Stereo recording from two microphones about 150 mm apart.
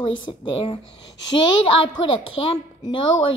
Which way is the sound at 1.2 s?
30° left (ahead or behind).